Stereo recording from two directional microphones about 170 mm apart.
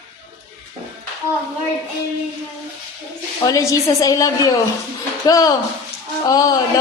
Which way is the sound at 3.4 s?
20° left (ahead or behind).